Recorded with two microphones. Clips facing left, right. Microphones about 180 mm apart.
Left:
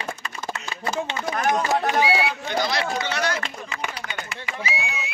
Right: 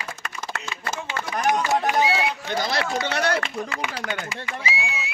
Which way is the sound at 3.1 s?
55° right (ahead or behind).